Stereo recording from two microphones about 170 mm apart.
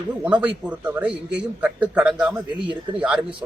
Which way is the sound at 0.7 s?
10° right (ahead or behind).